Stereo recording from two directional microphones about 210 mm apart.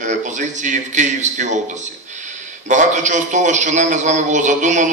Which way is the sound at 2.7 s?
35° right (ahead or behind).